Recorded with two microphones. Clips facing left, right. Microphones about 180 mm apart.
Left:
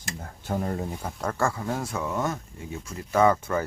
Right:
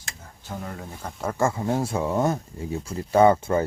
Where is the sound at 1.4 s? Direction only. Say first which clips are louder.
Right 5 dB; 25° right (ahead or behind).